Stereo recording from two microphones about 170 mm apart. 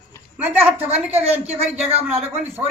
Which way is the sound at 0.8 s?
35° right (ahead or behind).